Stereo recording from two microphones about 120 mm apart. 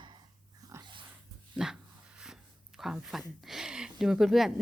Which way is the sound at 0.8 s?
40° right (ahead or behind).